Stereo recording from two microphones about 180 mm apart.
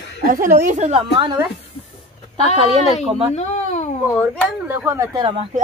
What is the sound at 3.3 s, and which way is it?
Speech, 40° left (ahead or behind).